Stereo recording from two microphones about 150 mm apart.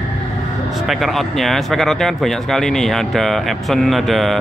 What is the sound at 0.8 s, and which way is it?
Speech, centre (ahead or behind).